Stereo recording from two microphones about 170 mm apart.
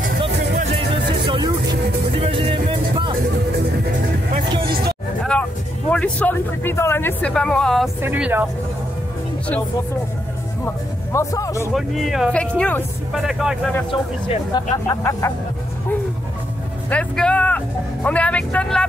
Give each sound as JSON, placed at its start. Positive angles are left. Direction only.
{"t": 0.7, "sound": "music", "side_deg": -30}
{"t": 4.5, "sound": "music", "side_deg": -30}
{"t": 5.2, "sound": "speech", "side_deg": 5}
{"t": 8.0, "sound": "speech", "side_deg": -10}
{"t": 11.1, "sound": "speech", "side_deg": 20}
{"t": 11.7, "sound": "speech", "side_deg": 0}
{"t": 13.3, "sound": "speech", "side_deg": -5}
{"t": 14.5, "sound": "speech", "side_deg": 20}
{"t": 16.9, "sound": "speech", "side_deg": 5}